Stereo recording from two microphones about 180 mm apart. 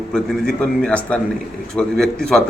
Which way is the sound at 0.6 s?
5° left (ahead or behind).